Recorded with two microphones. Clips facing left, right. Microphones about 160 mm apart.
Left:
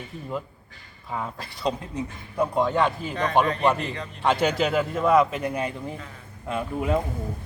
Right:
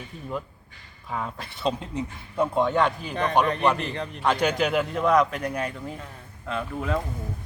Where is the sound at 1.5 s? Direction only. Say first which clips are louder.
Even; 25° right (ahead or behind).